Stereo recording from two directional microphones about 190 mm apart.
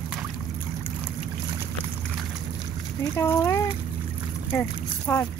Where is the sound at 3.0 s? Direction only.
15° left (ahead or behind).